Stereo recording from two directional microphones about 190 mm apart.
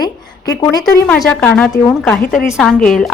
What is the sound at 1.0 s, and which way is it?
A woman's voice, 5° left (ahead or behind).